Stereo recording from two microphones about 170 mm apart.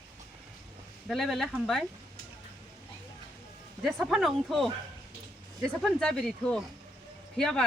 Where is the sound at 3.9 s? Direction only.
Centre (ahead or behind).